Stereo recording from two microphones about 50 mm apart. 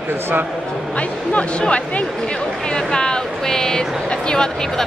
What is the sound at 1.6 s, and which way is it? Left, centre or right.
Speech, left.